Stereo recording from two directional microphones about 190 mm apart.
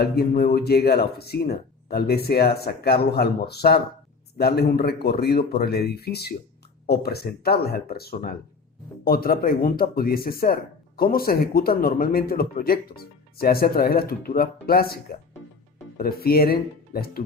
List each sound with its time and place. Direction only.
0.0 s speech: 55° left (ahead or behind)
16.0 s speech: 50° left (ahead or behind)